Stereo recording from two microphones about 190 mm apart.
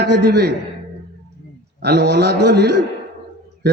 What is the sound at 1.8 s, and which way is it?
Speech, 60° right (ahead or behind).